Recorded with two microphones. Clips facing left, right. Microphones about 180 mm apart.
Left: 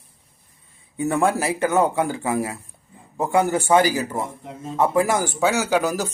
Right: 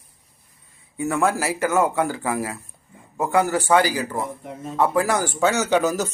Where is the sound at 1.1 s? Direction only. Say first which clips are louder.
Left 1 dB; 30° left (ahead or behind).